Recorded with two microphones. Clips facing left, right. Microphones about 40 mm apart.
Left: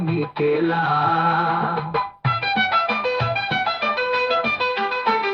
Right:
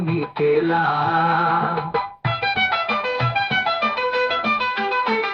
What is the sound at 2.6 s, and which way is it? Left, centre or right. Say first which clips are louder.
Music: left 2 dB; centre.